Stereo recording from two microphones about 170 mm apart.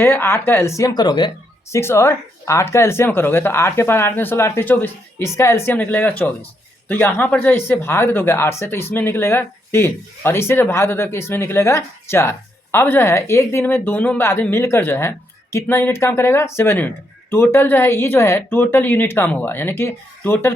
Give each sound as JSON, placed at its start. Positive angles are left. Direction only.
{"t": 0.0, "sound": "speech", "side_deg": 15}
{"t": 1.7, "sound": "speech", "side_deg": 15}